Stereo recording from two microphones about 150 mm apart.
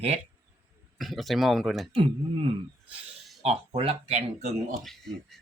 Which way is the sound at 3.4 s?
40° right (ahead or behind).